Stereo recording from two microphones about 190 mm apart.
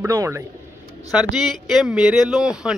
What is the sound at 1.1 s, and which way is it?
Speech, centre (ahead or behind).